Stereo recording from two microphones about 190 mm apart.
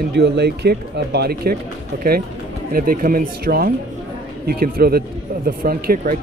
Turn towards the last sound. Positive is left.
turn(degrees=-50)  # may be behind; listen again after turning